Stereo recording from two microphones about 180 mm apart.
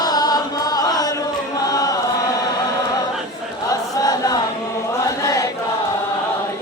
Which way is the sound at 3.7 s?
20° left (ahead or behind).